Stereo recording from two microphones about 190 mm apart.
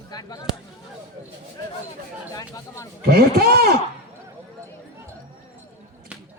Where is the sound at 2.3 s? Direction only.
15° left (ahead or behind).